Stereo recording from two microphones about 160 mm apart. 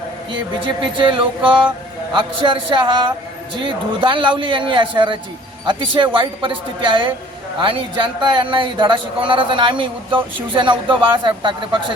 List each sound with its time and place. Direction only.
0.3 s a man's voice: 30° right (ahead or behind)
8.2 s a man's voice: 30° right (ahead or behind)